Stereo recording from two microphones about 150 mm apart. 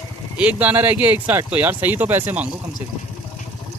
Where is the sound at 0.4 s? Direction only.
10° right (ahead or behind).